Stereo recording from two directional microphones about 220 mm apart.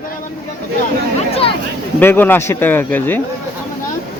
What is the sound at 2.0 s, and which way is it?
Speech, 10° left (ahead or behind).